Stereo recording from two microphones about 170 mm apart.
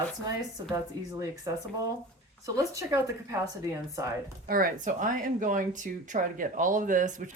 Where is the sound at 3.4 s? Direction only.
15° right (ahead or behind).